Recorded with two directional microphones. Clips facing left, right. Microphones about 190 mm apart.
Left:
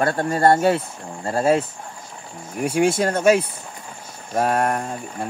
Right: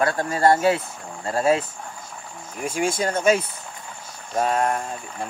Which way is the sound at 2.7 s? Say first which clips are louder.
Left 5 dB; 65° left (ahead or behind).